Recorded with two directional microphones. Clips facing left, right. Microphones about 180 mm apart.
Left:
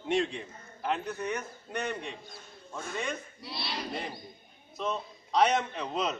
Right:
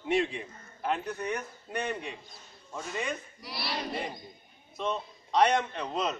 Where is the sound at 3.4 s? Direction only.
25° left (ahead or behind).